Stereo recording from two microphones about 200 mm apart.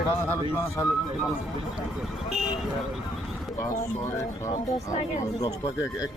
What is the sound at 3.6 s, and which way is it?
Speech, 40° left (ahead or behind).